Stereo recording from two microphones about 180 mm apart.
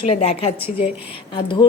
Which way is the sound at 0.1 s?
35° left (ahead or behind).